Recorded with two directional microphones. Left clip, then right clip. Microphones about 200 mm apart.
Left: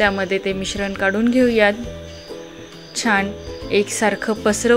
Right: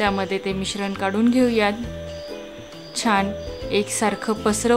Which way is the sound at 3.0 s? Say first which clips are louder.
Left 2 dB; 5° left (ahead or behind).